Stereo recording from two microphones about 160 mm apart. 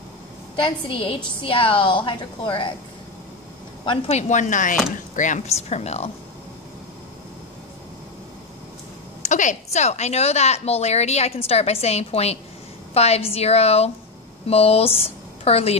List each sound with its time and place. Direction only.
0.6 s a woman's voice: 35° left (ahead or behind)
3.8 s a woman's voice: 35° left (ahead or behind)
4.2 s speech: 50° left (ahead or behind)
9.2 s a woman's voice: 50° left (ahead or behind)